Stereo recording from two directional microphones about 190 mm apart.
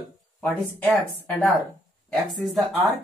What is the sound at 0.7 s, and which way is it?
Speech, 10° left (ahead or behind).